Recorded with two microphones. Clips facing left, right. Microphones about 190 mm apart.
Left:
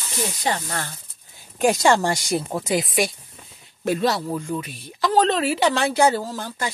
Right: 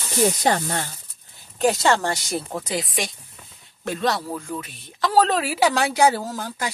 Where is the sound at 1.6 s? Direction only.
15° left (ahead or behind).